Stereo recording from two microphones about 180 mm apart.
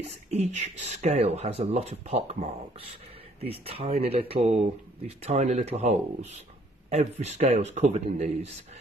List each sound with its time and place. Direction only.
0.0 s speech: 35° right (ahead or behind)